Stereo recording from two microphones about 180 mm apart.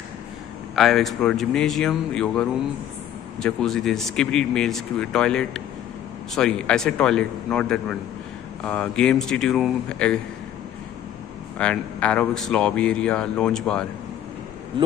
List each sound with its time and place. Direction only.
0.7 s speech: centre (ahead or behind)
11.5 s speech: 5° left (ahead or behind)